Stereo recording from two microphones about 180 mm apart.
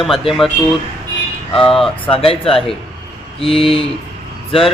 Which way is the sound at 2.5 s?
Centre (ahead or behind).